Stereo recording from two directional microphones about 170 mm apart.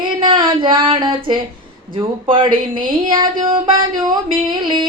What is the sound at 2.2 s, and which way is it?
Speech, 30° right (ahead or behind).